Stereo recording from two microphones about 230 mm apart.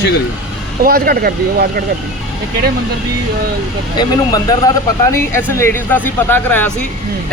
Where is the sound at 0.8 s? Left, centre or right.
Right.